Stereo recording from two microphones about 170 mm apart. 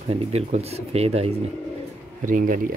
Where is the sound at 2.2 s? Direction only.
50° right (ahead or behind).